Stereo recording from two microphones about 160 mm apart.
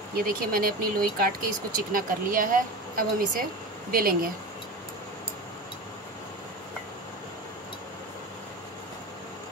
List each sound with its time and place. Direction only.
0.1 s speech: 65° right (ahead or behind)